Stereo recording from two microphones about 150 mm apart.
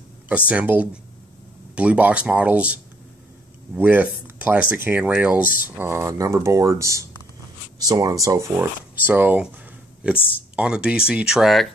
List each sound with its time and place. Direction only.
0.3 s speech: 10° right (ahead or behind)
10.5 s speech: 5° right (ahead or behind)